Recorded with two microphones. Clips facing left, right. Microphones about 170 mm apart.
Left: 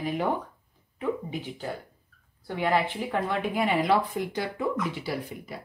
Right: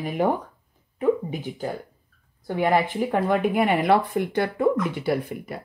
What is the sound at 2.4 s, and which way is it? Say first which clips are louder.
Speech: right 4 dB; 50° right (ahead or behind).